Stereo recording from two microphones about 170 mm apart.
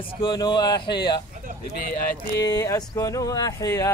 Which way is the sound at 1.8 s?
60° left (ahead or behind).